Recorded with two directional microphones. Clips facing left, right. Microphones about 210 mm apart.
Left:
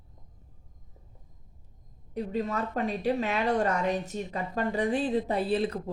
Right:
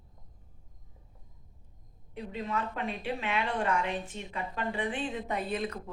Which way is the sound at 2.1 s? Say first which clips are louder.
Left 5 dB; 40° left (ahead or behind).